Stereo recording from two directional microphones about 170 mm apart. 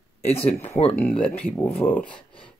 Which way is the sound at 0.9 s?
5° left (ahead or behind).